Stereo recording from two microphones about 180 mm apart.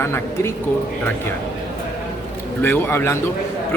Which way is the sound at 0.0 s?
15° left (ahead or behind).